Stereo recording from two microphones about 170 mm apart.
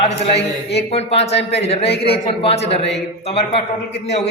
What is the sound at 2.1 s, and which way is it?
A man's voice, 35° left (ahead or behind).